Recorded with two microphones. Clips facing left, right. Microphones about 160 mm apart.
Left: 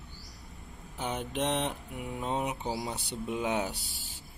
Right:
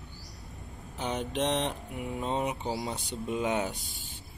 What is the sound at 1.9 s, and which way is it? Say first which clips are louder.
Speech: right 2 dB; centre (ahead or behind).